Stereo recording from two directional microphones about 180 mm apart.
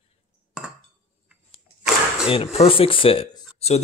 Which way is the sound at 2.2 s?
30° left (ahead or behind).